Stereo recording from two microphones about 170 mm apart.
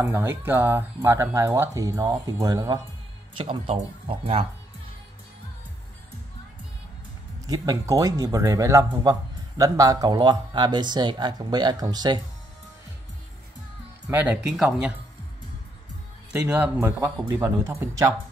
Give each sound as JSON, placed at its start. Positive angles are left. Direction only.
{"t": 0.0, "sound": "speech", "side_deg": -15}
{"t": 7.4, "sound": "speech", "side_deg": -20}
{"t": 14.0, "sound": "speech", "side_deg": -10}
{"t": 16.3, "sound": "speech", "side_deg": -5}